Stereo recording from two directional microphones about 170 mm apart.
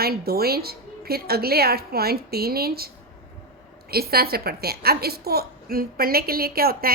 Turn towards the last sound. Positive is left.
turn(degrees=-65)  # may be behind; listen again after turning